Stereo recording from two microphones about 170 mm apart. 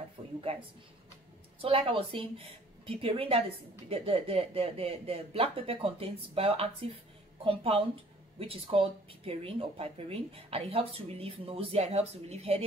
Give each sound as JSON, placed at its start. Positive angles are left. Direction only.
{"t": 0.4, "sound": "speech", "side_deg": -35}